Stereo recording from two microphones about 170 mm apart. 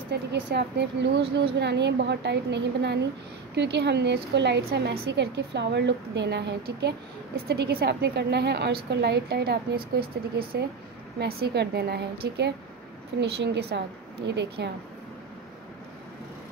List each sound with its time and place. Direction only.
0.1 s a woman's voice: 85° right
7.4 s a woman's voice: 65° right (ahead or behind); by 14.7 s 90° right